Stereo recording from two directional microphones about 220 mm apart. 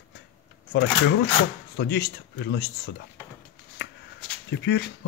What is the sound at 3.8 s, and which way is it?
Shuffling cards, 50° left (ahead or behind).